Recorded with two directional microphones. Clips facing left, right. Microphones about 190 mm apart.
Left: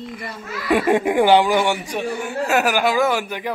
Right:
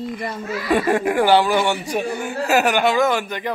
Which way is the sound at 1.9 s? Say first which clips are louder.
Right 1 dB; 5° right (ahead or behind).